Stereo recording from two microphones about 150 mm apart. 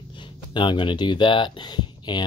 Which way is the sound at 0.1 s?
35° left (ahead or behind).